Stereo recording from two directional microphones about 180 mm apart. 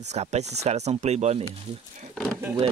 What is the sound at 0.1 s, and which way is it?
Speech, 40° right (ahead or behind).